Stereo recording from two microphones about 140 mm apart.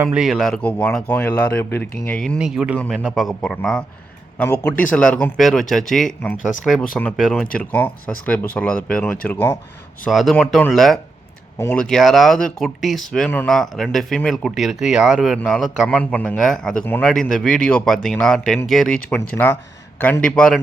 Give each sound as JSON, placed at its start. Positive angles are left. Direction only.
{"t": 0.0, "sound": "speech", "side_deg": -5}
{"t": 2.4, "sound": "speech", "side_deg": -5}
{"t": 2.7, "sound": "speech", "side_deg": 10}
{"t": 3.0, "sound": "speech", "side_deg": 0}
{"t": 4.4, "sound": "speech", "side_deg": 15}
{"t": 7.5, "sound": "speech", "side_deg": 10}
{"t": 10.0, "sound": "speech", "side_deg": 0}
{"t": 13.1, "sound": "speech", "side_deg": 10}
{"t": 19.1, "sound": "speech", "side_deg": 15}